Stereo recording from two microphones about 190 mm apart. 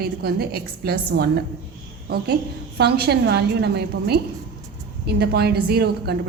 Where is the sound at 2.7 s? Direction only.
55° right (ahead or behind).